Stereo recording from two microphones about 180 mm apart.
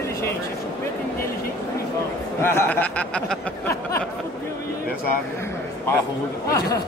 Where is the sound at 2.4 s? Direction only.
15° left (ahead or behind).